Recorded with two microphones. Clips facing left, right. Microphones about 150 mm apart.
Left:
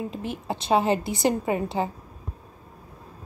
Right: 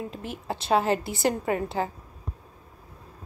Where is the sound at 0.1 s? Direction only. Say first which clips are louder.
Left 4 dB; centre (ahead or behind).